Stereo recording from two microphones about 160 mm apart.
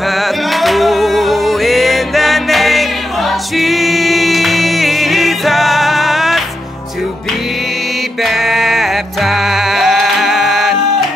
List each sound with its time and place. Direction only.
0.1 s music: centre (ahead or behind)
8.2 s music: centre (ahead or behind)